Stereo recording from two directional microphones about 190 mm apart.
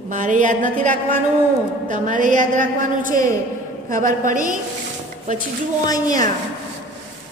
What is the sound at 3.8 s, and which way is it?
Speech, 45° right (ahead or behind).